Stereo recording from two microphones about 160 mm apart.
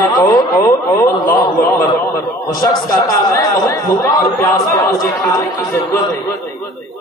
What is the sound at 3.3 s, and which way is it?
Speech, 20° left (ahead or behind).